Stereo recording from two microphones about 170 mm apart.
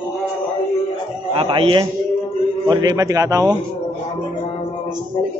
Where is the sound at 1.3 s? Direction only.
30° right (ahead or behind).